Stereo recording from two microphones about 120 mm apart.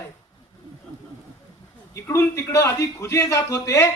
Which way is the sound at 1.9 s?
25° left (ahead or behind).